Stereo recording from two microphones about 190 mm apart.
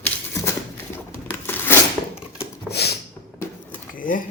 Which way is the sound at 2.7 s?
60° left (ahead or behind).